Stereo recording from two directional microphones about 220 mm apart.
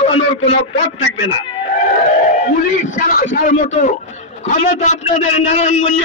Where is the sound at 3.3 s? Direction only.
40° left (ahead or behind).